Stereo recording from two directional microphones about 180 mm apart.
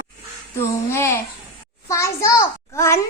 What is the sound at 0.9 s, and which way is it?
Babbling, 15° left (ahead or behind).